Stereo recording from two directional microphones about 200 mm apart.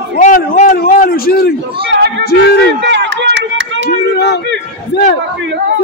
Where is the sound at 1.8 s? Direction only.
55° right (ahead or behind).